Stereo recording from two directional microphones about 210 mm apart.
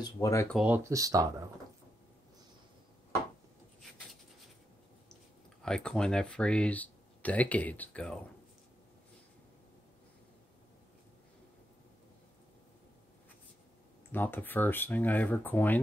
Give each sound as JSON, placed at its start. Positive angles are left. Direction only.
{"t": 0.0, "sound": "speech", "side_deg": 15}
{"t": 0.6, "sound": "speech", "side_deg": -10}
{"t": 5.6, "sound": "speech", "side_deg": 5}
{"t": 14.1, "sound": "speech", "side_deg": 10}